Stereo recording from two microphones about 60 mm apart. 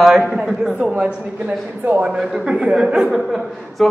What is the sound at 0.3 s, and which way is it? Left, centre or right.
Speech, centre.